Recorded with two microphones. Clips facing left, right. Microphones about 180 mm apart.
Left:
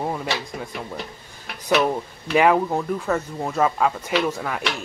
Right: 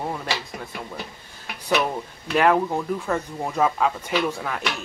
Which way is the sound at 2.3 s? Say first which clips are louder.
Left 2 dB; 5° left (ahead or behind).